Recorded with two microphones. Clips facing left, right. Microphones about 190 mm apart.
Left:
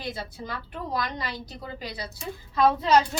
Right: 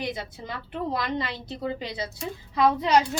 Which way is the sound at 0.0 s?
20° right (ahead or behind).